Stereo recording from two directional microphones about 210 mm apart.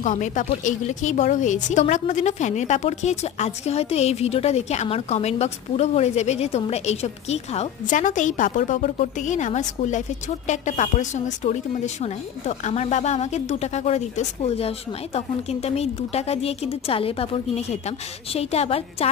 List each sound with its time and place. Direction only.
0.0 s a woman's voice: 35° left (ahead or behind)